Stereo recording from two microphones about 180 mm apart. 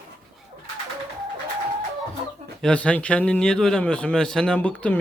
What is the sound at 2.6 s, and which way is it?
Speech, 5° left (ahead or behind).